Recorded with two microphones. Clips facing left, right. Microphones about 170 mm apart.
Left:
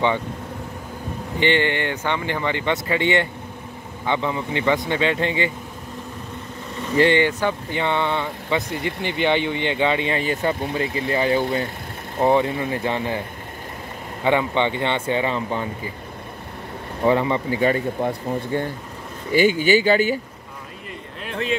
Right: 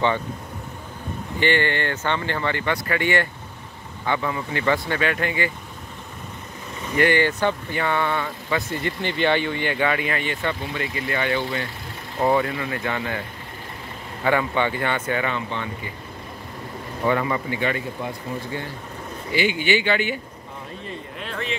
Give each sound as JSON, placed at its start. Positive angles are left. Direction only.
{"t": 1.4, "sound": "speech", "side_deg": 20}
{"t": 7.0, "sound": "speech", "side_deg": 25}
{"t": 7.2, "sound": "speech", "side_deg": 10}
{"t": 7.7, "sound": "speech", "side_deg": 20}
{"t": 14.2, "sound": "speech", "side_deg": 20}
{"t": 17.0, "sound": "speech", "side_deg": 25}
{"t": 17.6, "sound": "speech", "side_deg": 40}
{"t": 18.0, "sound": "speech", "side_deg": 50}